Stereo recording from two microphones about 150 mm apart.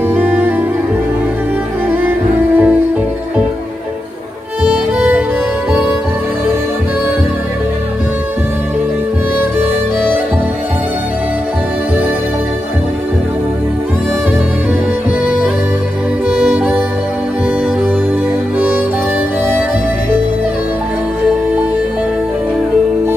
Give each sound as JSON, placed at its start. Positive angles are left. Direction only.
{"t": 0.1, "sound": "music", "side_deg": -15}
{"t": 2.0, "sound": "music", "side_deg": -10}
{"t": 4.6, "sound": "music", "side_deg": -5}
{"t": 16.3, "sound": "music", "side_deg": -5}